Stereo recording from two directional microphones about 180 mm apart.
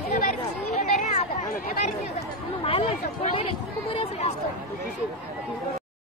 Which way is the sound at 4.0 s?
35° left (ahead or behind).